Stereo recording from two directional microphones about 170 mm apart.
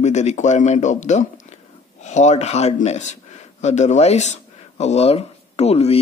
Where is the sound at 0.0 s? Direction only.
40° left (ahead or behind).